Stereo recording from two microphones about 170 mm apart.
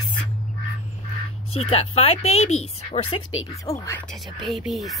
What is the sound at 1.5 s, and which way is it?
A woman's voice, 35° left (ahead or behind).